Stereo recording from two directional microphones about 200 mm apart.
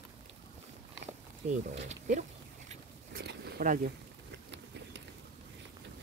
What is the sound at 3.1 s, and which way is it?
Zipper, 50° right (ahead or behind).